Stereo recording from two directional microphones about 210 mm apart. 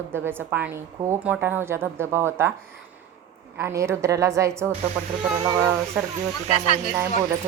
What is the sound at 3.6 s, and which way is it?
A woman's voice, 10° right (ahead or behind).